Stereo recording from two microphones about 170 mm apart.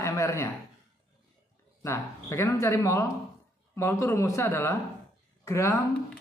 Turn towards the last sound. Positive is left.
turn(degrees=15)  # may be behind; listen again after turning